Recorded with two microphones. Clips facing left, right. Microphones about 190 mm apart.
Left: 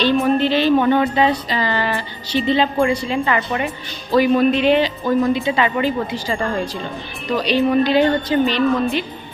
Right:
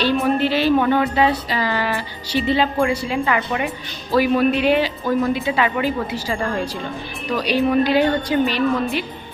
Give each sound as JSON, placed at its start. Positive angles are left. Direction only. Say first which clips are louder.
{"t": 0.0, "sound": "speech", "louder": "left 2 dB", "side_deg": -5}